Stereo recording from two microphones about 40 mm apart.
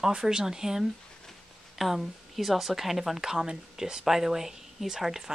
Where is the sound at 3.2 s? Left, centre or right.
Centre.